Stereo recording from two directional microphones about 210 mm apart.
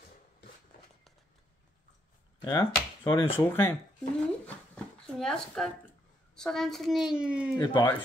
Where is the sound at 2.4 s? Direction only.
20° left (ahead or behind).